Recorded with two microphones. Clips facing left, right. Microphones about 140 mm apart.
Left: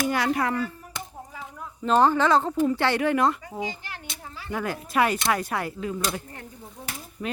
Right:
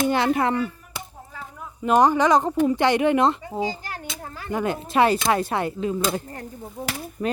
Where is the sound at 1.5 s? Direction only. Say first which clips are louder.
Right 2 dB; 10° right (ahead or behind); by 4.5 s 50° right (ahead or behind).